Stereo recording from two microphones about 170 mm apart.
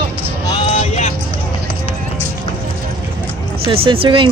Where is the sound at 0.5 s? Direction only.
40° left (ahead or behind).